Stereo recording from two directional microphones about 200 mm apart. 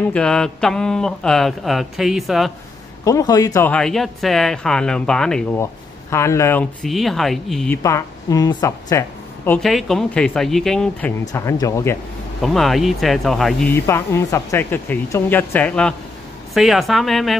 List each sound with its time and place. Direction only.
0.0 s speech: 5° left (ahead or behind)
3.1 s speech: 15° left (ahead or behind)
5.6 s speech: 15° left (ahead or behind)
7.8 s speech: 15° left (ahead or behind)
9.5 s speech: centre (ahead or behind)
12.4 s speech: centre (ahead or behind)